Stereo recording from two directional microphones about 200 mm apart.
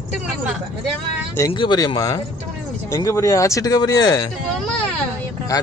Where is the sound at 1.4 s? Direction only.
20° left (ahead or behind).